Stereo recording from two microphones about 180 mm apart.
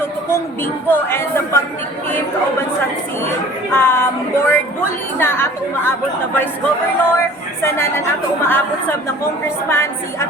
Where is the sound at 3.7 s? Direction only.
10° left (ahead or behind).